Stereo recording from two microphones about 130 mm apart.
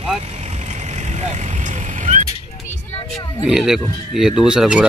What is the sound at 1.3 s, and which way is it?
Vehicle, 70° right (ahead or behind).